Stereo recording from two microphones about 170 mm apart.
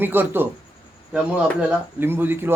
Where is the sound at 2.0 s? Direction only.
10° right (ahead or behind).